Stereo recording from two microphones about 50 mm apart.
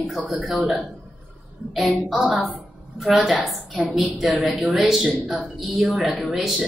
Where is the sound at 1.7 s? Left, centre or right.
Centre.